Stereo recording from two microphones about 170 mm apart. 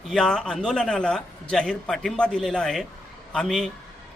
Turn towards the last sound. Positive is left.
turn(degrees=0)  # may be behind; listen again after turning